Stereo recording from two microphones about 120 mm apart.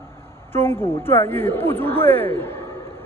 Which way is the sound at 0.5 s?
20° left (ahead or behind).